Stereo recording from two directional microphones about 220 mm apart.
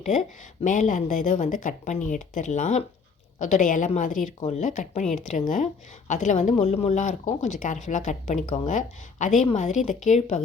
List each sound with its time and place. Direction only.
0.0 s speech: 35° left (ahead or behind)